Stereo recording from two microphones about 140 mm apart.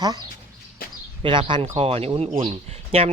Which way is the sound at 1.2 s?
35° right (ahead or behind).